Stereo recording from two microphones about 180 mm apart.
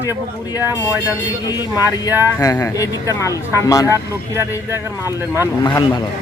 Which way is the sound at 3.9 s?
15° right (ahead or behind).